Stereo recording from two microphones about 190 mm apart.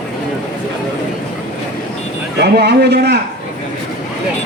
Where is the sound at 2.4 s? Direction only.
60° right (ahead or behind).